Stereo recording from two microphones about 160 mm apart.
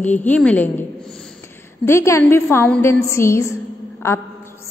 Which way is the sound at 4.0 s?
15° left (ahead or behind).